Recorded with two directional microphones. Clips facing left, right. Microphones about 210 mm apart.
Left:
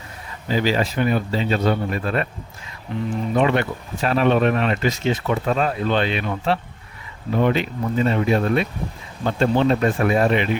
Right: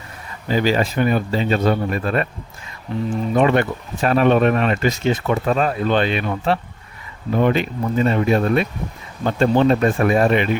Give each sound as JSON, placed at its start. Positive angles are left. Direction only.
{"t": 0.5, "sound": "speech", "side_deg": -50}
{"t": 2.9, "sound": "speech", "side_deg": -35}
{"t": 3.3, "sound": "speech", "side_deg": -50}